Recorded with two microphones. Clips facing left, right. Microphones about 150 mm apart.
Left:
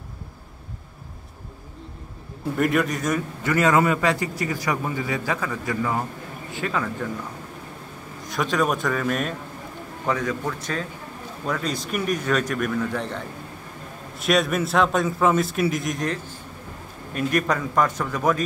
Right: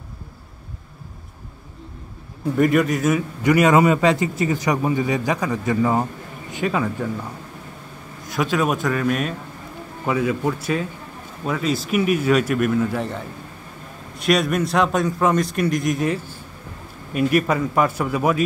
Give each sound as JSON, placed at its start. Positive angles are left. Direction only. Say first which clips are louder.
{"t": 2.5, "sound": "a man's voice", "louder": "right 4 dB", "side_deg": 0}
{"t": 3.4, "sound": "a man's voice", "louder": "right 5 dB", "side_deg": -15}
{"t": 8.3, "sound": "a man's voice", "louder": "right 2 dB", "side_deg": 0}